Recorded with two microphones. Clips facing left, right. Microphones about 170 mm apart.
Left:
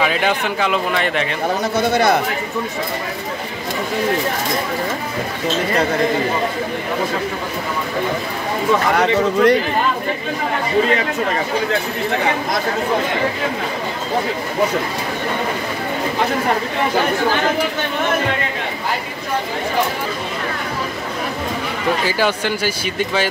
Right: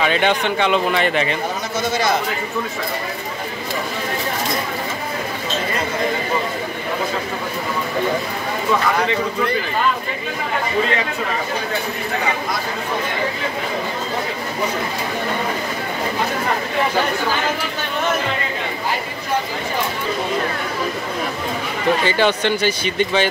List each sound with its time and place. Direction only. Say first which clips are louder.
0.0 s a man's voice: right 1 dB; 5° left (ahead or behind)
1.8 s a man's voice: left 4 dB; 60° left (ahead or behind)
8.9 s speech: left 5 dB; 75° left (ahead or behind)
22.0 s a man's voice: right 1 dB; 5° left (ahead or behind)